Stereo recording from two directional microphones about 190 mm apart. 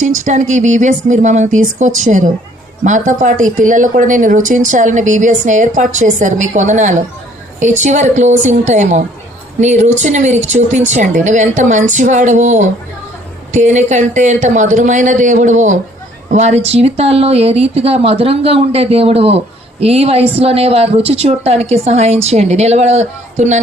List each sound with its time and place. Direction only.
0.3 s a woman's voice: 40° right (ahead or behind)